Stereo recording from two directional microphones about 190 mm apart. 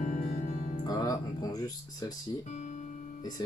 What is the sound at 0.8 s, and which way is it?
Music, 20° left (ahead or behind).